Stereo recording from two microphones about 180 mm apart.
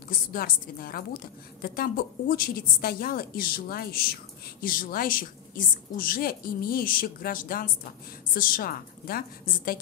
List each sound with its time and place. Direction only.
0.1 s a woman's voice: 55° left (ahead or behind)